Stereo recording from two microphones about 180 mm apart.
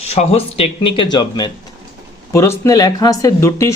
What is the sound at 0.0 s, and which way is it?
Speech, 35° left (ahead or behind).